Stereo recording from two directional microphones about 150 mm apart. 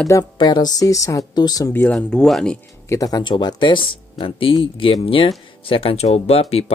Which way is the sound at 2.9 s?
25° left (ahead or behind).